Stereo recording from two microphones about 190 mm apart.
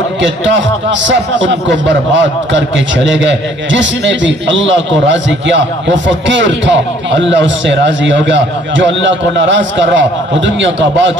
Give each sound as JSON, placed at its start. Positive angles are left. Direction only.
{"t": 0.2, "sound": "a man's voice", "side_deg": -70}